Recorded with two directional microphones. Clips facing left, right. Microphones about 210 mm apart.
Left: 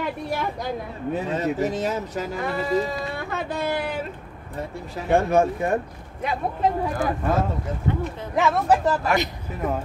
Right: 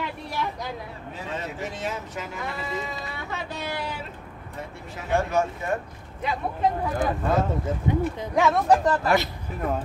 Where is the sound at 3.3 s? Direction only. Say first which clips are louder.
Left 6 dB; 50° left (ahead or behind).